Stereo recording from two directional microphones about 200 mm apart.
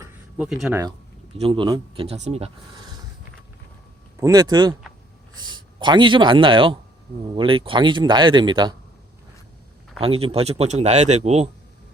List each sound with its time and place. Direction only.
0.0 s a sound: 5° right (ahead or behind)
1.4 s speech: 25° right (ahead or behind)
4.2 s speech: 20° right (ahead or behind)
5.8 s speech: 25° right (ahead or behind)
10.0 s speech: 30° right (ahead or behind)